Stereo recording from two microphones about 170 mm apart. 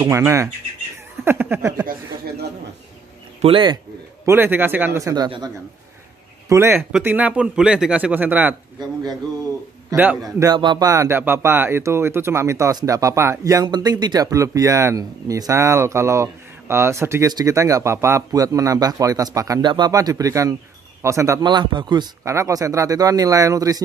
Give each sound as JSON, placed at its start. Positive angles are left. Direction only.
{"t": 0.0, "sound": "speech", "side_deg": -15}
{"t": 1.2, "sound": "a sound", "side_deg": -15}
{"t": 3.3, "sound": "speech", "side_deg": -30}
{"t": 4.3, "sound": "speech", "side_deg": -10}
{"t": 6.5, "sound": "speech", "side_deg": -15}
{"t": 9.8, "sound": "a man's voice", "side_deg": -10}
{"t": 10.2, "sound": "speech", "side_deg": -25}